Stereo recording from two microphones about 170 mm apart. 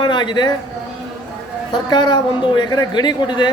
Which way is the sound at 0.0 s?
25° left (ahead or behind).